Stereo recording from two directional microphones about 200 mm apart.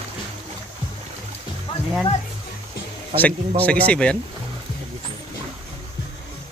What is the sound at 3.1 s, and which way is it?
Speech, 5° left (ahead or behind).